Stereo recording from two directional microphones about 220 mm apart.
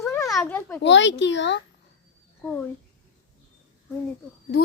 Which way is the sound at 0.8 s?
55° left (ahead or behind).